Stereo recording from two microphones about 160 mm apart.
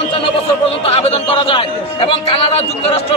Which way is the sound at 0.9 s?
40° left (ahead or behind).